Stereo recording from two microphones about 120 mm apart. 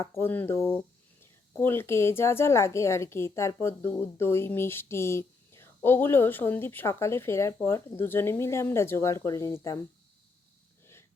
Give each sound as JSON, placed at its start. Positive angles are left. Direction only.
{"t": 0.0, "sound": "speech", "side_deg": 20}